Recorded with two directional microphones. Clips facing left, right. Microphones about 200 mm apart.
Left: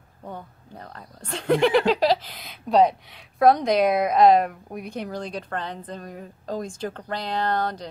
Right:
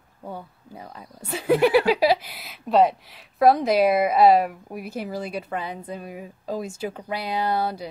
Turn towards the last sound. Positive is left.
turn(degrees=-10)  # may be behind; listen again after turning